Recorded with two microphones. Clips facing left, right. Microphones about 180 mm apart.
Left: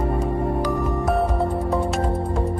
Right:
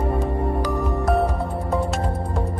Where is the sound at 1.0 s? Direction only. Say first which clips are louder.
Right 2 dB; centre (ahead or behind).